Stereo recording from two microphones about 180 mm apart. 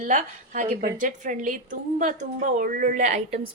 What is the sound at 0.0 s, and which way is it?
A woman's voice, 45° right (ahead or behind).